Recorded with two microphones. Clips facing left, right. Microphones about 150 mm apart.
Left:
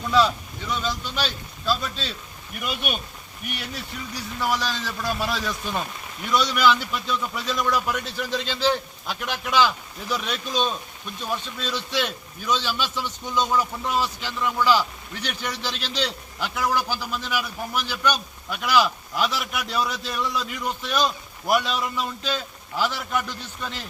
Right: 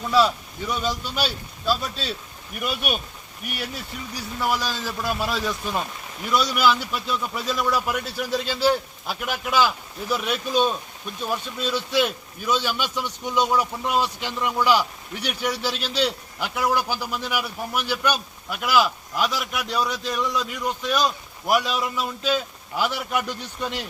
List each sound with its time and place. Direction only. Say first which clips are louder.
0.1 s a man's voice: right 1 dB; 5° right (ahead or behind)
4.4 s a man's voice: right 1 dB; 10° right (ahead or behind)